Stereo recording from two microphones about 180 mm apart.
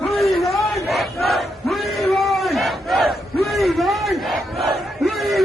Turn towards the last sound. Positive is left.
turn(degrees=0)  # may be behind; listen again after turning